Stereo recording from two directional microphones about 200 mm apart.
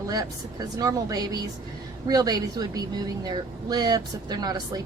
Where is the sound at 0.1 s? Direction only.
20° right (ahead or behind).